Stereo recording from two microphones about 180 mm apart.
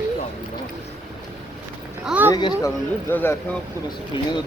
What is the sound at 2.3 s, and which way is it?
Speech, 20° left (ahead or behind).